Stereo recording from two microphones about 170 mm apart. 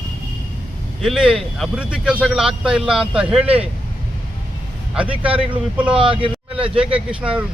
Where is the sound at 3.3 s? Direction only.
35° right (ahead or behind).